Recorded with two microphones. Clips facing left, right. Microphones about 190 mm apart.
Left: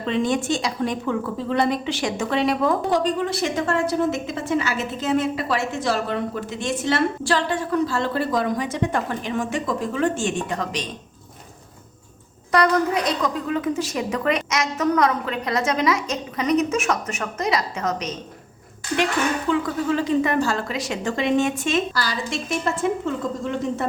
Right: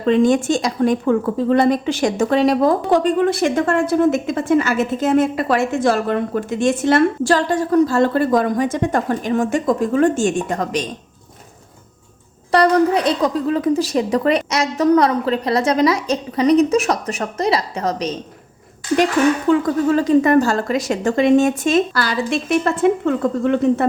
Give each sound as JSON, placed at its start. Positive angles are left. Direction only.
{"t": 0.0, "sound": "a woman's voice", "side_deg": -45}
{"t": 2.9, "sound": "a woman's voice", "side_deg": -55}
{"t": 12.5, "sound": "a woman's voice", "side_deg": -30}
{"t": 19.5, "sound": "a woman's voice", "side_deg": -45}
{"t": 21.9, "sound": "a woman's voice", "side_deg": -60}